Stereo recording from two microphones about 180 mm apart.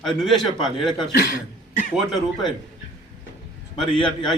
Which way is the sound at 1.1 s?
55° left (ahead or behind).